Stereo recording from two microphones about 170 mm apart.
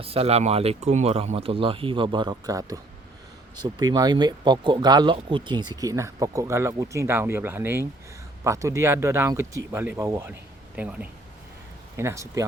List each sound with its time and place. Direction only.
0.0 s speech: 35° right (ahead or behind); by 12.5 s 20° right (ahead or behind)